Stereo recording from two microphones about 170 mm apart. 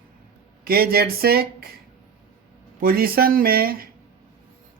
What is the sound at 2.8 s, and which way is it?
Speech, 60° right (ahead or behind).